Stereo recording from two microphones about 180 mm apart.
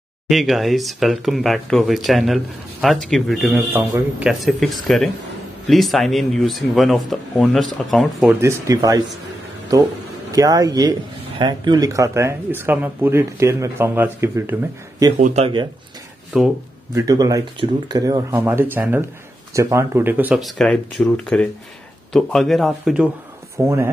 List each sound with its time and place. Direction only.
0.3 s speech: centre (ahead or behind)
3.7 s speech: 10° right (ahead or behind)
4.3 s speech: centre (ahead or behind)
8.4 s speech: 15° right (ahead or behind)
10.3 s speech: 20° right (ahead or behind)
15.1 s speech: 45° right (ahead or behind)
15.4 s speech: 25° right (ahead or behind)
16.9 s speech: 20° right (ahead or behind); by 23.0 s centre (ahead or behind)
23.6 s speech: 15° right (ahead or behind)